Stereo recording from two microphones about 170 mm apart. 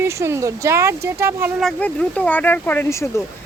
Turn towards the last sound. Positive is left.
turn(degrees=15)  # may be behind; listen again after turning